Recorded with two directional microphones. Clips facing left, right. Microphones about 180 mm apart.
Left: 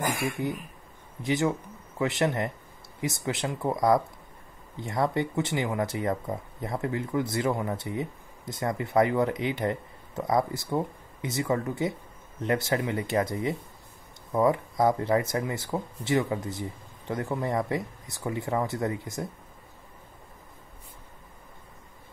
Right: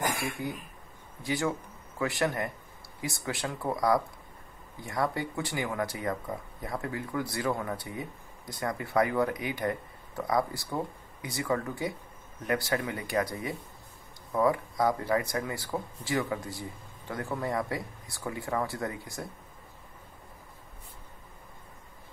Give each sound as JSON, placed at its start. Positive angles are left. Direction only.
{"t": 0.0, "sound": "speech", "side_deg": 25}